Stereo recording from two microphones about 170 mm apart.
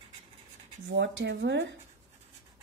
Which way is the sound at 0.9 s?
90° right.